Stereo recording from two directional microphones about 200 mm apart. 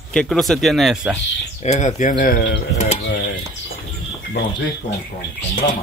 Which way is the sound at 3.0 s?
60° left (ahead or behind).